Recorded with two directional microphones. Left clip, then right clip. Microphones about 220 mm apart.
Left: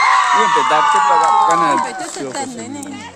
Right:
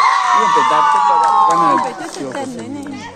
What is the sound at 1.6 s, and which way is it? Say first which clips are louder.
Speech: right 1 dB; 50° left (ahead or behind).